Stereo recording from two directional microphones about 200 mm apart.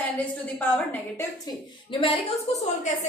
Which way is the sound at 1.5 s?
20° left (ahead or behind).